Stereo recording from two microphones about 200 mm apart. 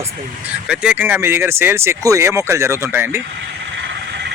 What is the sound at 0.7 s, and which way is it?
Speech, 5° right (ahead or behind).